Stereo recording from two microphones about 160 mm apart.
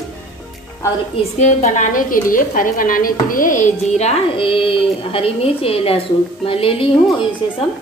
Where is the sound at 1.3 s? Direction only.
45° left (ahead or behind).